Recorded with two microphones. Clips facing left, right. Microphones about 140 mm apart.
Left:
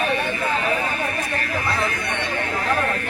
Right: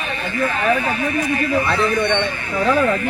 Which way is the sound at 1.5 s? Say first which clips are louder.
Right 6 dB; 85° right.